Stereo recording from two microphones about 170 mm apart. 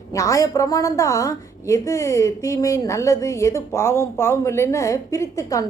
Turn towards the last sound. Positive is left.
turn(degrees=20)  # may be behind; listen again after turning